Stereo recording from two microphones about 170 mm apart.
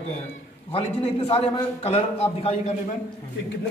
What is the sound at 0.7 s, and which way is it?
A man's voice, 35° left (ahead or behind).